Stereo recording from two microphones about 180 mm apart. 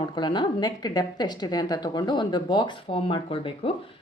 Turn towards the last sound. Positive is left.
turn(degrees=30)  # may be behind; listen again after turning